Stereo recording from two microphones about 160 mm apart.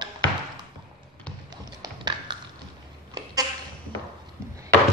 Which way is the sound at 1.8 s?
30° right (ahead or behind).